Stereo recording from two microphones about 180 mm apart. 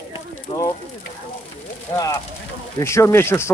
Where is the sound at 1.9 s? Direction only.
15° left (ahead or behind).